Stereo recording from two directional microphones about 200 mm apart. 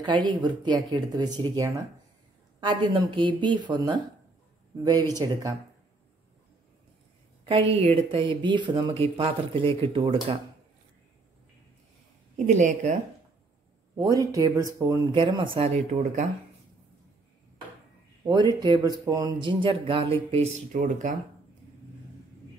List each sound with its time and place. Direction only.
0.0 s speech: 20° right (ahead or behind)
7.4 s speech: 25° right (ahead or behind)
12.4 s speech: 35° right (ahead or behind)
13.9 s speech: 15° right (ahead or behind); by 16.3 s 35° right (ahead or behind)
18.2 s speech: 20° right (ahead or behind); by 21.1 s 40° right (ahead or behind)